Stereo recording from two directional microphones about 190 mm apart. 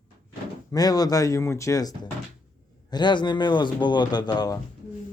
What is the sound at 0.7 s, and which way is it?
A man's voice, 20° left (ahead or behind).